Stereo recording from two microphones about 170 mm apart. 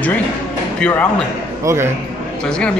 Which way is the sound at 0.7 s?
5° left (ahead or behind).